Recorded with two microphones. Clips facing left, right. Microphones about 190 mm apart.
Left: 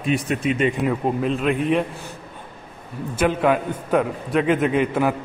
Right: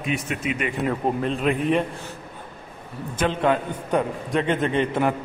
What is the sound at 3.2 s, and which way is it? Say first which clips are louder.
A man's voice: left 3 dB; 10° left (ahead or behind).